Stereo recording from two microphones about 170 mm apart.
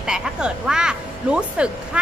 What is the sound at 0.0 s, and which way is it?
A woman's voice, 5° right (ahead or behind).